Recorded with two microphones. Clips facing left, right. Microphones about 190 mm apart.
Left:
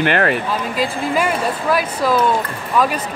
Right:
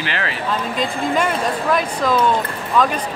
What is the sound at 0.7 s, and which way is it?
Speech, 5° left (ahead or behind).